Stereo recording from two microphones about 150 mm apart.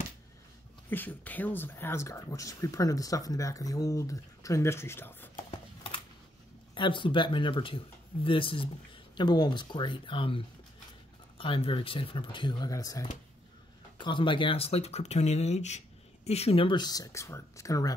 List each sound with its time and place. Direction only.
0.8 s speech: 10° left (ahead or behind)
6.7 s speech: 30° left (ahead or behind)